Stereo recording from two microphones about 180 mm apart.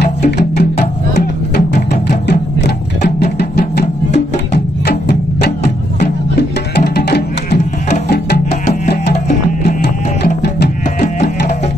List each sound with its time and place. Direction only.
0.6 s music: 65° left (ahead or behind)
6.7 s music: 60° left (ahead or behind)
9.1 s music: 40° left (ahead or behind)
10.2 s music: 65° left (ahead or behind)
11.0 s music: 45° left (ahead or behind)